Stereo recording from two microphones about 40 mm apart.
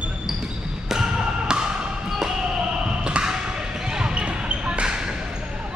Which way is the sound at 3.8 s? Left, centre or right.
Right.